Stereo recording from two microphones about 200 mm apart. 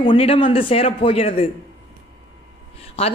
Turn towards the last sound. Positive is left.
turn(degrees=30)  # may be behind; listen again after turning